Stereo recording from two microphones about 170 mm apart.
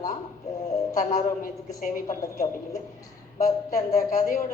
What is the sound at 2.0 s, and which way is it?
Speech, 20° left (ahead or behind).